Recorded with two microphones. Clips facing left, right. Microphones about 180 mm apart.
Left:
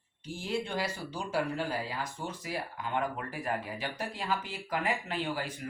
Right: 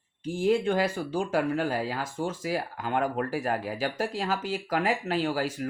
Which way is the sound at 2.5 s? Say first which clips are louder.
Right 5 dB; 45° right (ahead or behind).